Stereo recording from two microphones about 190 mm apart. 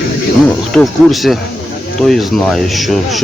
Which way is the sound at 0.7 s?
Centre (ahead or behind).